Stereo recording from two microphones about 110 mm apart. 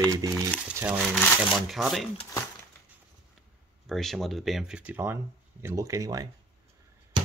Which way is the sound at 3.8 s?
Centre (ahead or behind).